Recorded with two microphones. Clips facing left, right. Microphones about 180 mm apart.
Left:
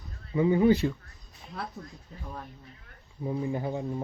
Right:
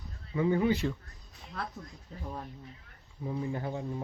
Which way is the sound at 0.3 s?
15° left (ahead or behind).